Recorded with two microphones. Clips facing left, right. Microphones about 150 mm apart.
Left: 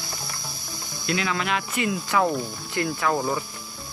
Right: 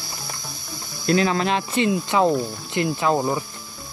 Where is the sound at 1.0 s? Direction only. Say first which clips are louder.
Right 7 dB; 35° right (ahead or behind); by 3.4 s 20° right (ahead or behind).